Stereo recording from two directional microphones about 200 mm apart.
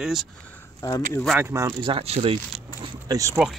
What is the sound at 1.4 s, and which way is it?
Speech, 15° right (ahead or behind).